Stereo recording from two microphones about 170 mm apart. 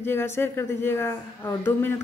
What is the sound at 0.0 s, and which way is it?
A woman's voice, 15° left (ahead or behind).